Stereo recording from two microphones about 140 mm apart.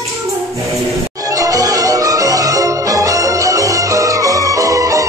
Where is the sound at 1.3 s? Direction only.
25° right (ahead or behind).